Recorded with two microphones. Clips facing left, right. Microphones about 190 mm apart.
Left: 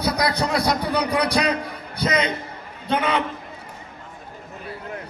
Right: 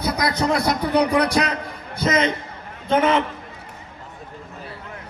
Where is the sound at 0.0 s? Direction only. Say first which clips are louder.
Even; 50° right (ahead or behind).